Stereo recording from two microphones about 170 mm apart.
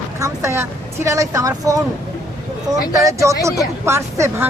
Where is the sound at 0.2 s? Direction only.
15° right (ahead or behind).